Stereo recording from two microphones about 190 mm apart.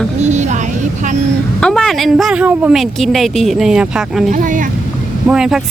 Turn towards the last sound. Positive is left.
turn(degrees=-5)  # may be behind; listen again after turning